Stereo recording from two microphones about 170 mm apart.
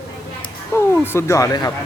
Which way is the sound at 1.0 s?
15° left (ahead or behind).